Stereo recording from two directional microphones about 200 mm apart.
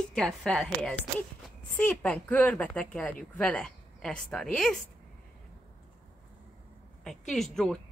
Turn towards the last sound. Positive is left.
turn(degrees=0)  # may be behind; listen again after turning